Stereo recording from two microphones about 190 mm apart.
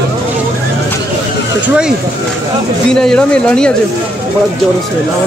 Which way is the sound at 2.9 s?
5° left (ahead or behind).